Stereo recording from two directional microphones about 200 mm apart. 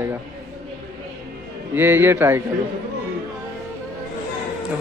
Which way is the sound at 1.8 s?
10° right (ahead or behind).